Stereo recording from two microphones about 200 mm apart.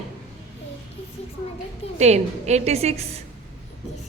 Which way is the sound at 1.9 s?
35° right (ahead or behind).